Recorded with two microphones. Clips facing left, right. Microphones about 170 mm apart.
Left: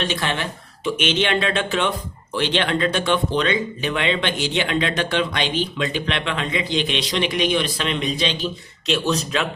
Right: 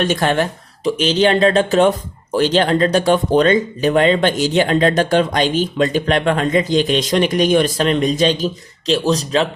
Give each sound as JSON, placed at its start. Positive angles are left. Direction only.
{"t": 0.0, "sound": "speech", "side_deg": -45}